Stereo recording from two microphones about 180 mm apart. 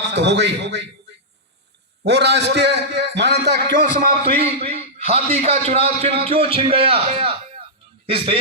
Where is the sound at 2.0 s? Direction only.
70° right (ahead or behind).